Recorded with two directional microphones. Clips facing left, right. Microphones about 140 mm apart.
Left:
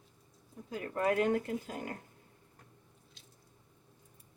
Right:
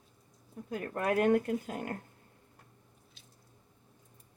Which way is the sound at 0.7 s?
60° right (ahead or behind).